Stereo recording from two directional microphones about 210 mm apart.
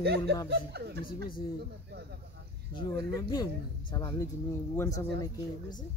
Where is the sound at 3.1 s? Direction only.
15° left (ahead or behind).